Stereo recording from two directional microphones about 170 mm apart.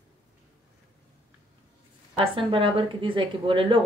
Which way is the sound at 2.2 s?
30° right (ahead or behind).